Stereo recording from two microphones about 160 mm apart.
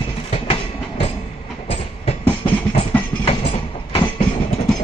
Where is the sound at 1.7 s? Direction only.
40° left (ahead or behind).